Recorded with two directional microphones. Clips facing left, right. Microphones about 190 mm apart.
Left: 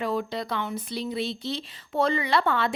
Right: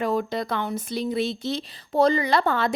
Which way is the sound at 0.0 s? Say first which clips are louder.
Right 3 dB; 45° right (ahead or behind).